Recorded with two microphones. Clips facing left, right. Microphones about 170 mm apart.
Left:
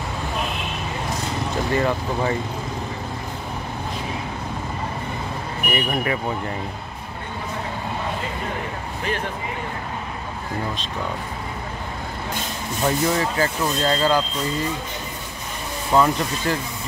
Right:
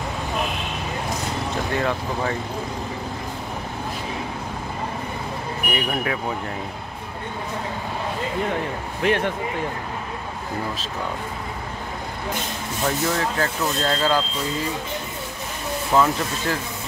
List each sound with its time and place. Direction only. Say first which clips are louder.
1.7 s speech: left 4 dB; centre (ahead or behind)
5.7 s speech: left 2 dB; centre (ahead or behind)
12.8 s speech: left 2 dB; centre (ahead or behind)
15.9 s speech: left 1 dB; centre (ahead or behind)